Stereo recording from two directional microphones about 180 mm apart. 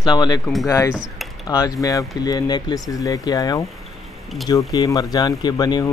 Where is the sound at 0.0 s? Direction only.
25° left (ahead or behind).